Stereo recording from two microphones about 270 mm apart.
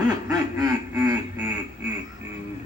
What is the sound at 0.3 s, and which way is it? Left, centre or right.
Quack, centre.